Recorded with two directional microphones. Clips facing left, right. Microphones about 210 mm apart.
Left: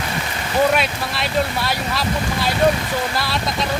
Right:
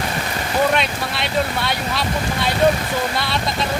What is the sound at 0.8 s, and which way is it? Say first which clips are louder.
Speech: even; centre (ahead or behind).